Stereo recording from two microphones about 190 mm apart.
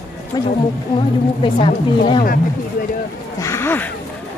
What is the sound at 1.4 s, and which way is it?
Speech, 25° left (ahead or behind).